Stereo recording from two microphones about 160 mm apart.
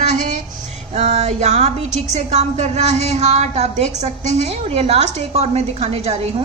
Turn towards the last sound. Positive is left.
turn(degrees=-40)  # may be behind; listen again after turning